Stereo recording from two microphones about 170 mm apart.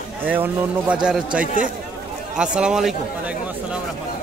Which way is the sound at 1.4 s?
50° left (ahead or behind).